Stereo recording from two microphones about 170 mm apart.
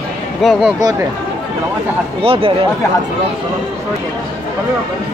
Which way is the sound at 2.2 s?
35° right (ahead or behind).